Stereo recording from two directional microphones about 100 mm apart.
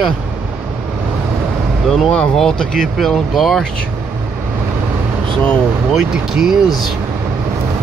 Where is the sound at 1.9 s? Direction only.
5° left (ahead or behind).